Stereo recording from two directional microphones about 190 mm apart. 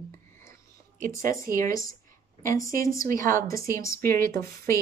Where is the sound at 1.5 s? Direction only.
50° right (ahead or behind).